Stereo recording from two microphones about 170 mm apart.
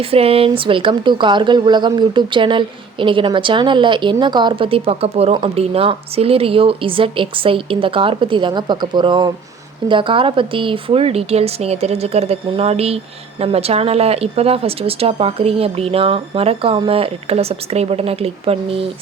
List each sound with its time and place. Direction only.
0.0 s speech: 35° right (ahead or behind)